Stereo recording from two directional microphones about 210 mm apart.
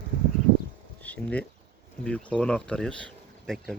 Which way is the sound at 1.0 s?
5° left (ahead or behind).